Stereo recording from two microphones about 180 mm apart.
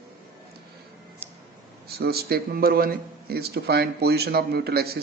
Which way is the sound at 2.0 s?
60° right (ahead or behind).